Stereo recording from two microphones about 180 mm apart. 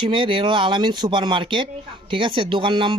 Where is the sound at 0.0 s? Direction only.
30° right (ahead or behind).